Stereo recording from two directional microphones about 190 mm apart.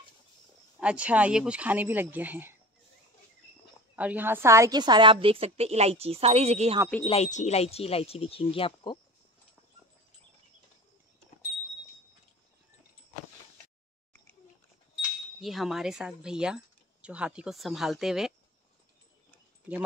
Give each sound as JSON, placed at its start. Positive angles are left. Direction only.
{"t": 0.7, "sound": "speech", "side_deg": -5}
{"t": 3.9, "sound": "a woman's voice", "side_deg": -10}
{"t": 7.1, "sound": "speech", "side_deg": 35}
{"t": 15.0, "sound": "speech", "side_deg": 0}